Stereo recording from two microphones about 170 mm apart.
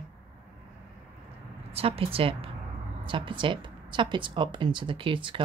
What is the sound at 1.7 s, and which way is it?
Speech, 35° right (ahead or behind).